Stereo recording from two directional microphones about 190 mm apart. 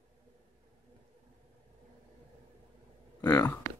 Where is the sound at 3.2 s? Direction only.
10° left (ahead or behind).